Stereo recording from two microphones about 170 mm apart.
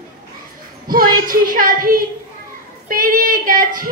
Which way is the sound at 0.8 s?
55° right (ahead or behind).